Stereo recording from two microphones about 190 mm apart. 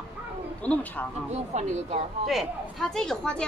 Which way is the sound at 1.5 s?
35° right (ahead or behind).